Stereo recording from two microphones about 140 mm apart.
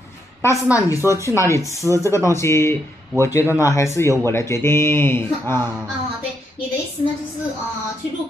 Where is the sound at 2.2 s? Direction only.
20° left (ahead or behind).